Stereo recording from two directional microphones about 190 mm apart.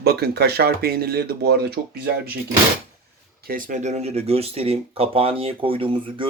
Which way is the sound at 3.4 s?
45° right (ahead or behind).